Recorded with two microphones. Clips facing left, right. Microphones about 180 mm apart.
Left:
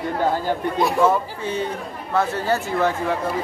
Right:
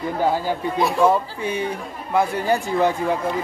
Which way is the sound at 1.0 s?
15° right (ahead or behind).